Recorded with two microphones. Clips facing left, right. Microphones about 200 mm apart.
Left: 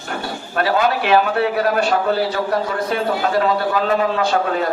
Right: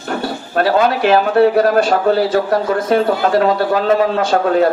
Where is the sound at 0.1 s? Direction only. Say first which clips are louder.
Right 6 dB; 45° right (ahead or behind).